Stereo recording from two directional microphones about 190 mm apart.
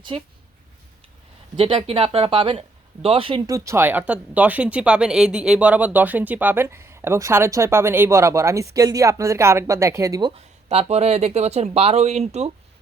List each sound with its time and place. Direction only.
0.1 s speech: 30° right (ahead or behind)
1.5 s speech: 30° right (ahead or behind)